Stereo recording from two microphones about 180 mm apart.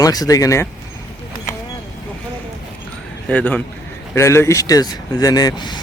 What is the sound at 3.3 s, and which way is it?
A man's voice, 10° left (ahead or behind).